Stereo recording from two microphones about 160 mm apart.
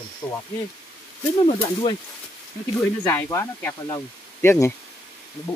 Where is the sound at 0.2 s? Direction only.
15° left (ahead or behind).